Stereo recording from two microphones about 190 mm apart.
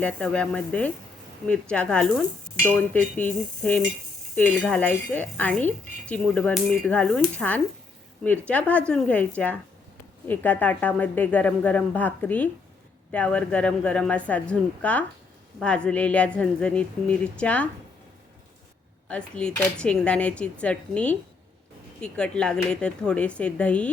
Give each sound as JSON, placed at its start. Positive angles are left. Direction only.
{"t": 0.0, "sound": "speech", "side_deg": 5}
{"t": 19.0, "sound": "speech", "side_deg": 5}